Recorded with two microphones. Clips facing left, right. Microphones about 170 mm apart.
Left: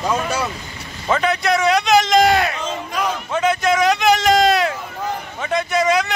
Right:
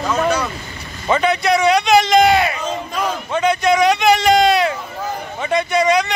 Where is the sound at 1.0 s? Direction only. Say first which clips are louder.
Right 2 dB; centre (ahead or behind).